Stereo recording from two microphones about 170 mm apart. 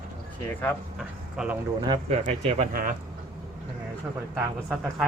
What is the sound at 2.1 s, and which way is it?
Speech, 40° right (ahead or behind).